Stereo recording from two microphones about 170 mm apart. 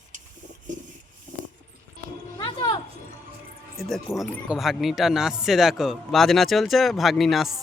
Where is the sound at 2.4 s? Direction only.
30° left (ahead or behind).